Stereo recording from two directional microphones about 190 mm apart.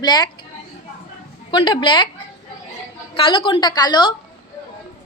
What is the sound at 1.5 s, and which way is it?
Speech, 25° left (ahead or behind).